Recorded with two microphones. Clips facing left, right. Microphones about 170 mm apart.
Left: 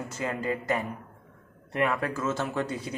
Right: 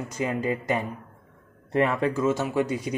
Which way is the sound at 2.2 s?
15° right (ahead or behind).